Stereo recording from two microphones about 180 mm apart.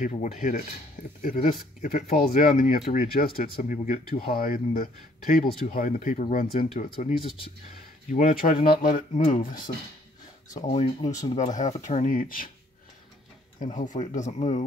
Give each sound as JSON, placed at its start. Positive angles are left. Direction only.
{"t": 0.0, "sound": "speech", "side_deg": 45}
{"t": 10.6, "sound": "speech", "side_deg": 35}
{"t": 13.6, "sound": "speech", "side_deg": 45}